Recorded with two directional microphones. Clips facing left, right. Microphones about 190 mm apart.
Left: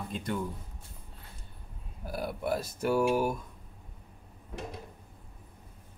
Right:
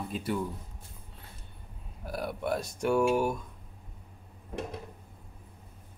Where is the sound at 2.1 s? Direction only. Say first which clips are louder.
Even; centre (ahead or behind).